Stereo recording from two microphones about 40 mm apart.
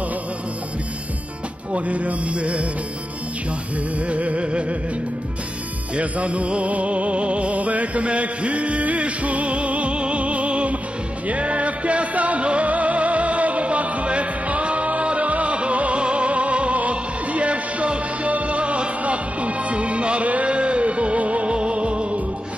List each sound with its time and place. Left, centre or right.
1.7 s music: right
4.1 s music: right
5.9 s music: right